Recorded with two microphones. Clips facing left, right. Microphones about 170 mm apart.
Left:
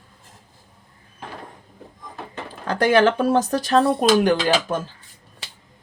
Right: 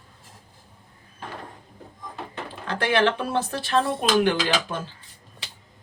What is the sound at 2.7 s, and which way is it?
Speech, 40° left (ahead or behind).